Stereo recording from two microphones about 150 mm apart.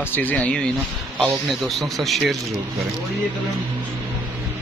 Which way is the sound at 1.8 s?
Centre (ahead or behind).